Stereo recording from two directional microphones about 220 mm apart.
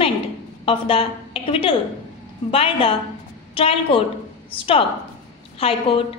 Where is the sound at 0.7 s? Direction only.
25° left (ahead or behind).